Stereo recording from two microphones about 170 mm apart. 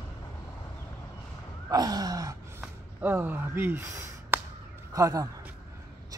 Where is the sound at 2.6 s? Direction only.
10° right (ahead or behind).